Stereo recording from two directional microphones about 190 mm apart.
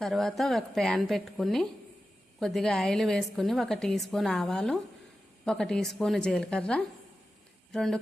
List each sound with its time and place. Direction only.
0.0 s a woman's voice: centre (ahead or behind)